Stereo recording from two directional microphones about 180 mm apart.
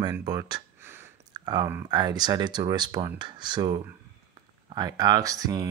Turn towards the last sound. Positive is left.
turn(degrees=-20)  # may be behind; listen again after turning